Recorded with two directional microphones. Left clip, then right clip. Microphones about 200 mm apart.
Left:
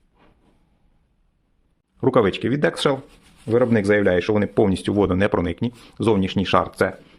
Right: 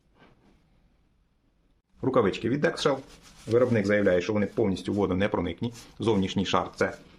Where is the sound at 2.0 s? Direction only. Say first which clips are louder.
Left 6 dB; 35° left (ahead or behind).